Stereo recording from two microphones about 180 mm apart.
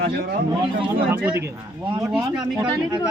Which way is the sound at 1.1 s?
5° right (ahead or behind).